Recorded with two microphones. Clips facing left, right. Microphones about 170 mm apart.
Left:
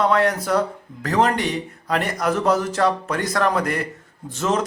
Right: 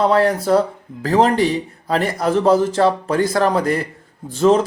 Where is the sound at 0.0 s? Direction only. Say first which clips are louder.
Right 4 dB; 30° right (ahead or behind).